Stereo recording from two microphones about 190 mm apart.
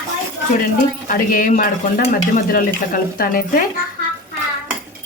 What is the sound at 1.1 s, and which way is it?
Speech, 45° left (ahead or behind).